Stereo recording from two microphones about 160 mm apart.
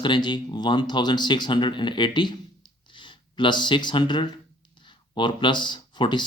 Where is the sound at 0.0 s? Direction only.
30° left (ahead or behind).